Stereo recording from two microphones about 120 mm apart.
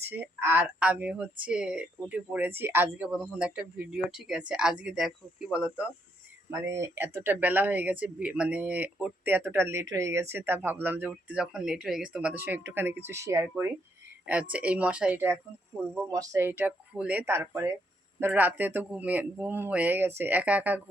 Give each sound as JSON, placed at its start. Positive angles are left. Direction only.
{"t": 0.0, "sound": "speech", "side_deg": -20}
{"t": 6.5, "sound": "speech", "side_deg": -25}
{"t": 14.3, "sound": "speech", "side_deg": -10}
{"t": 16.1, "sound": "speech", "side_deg": -25}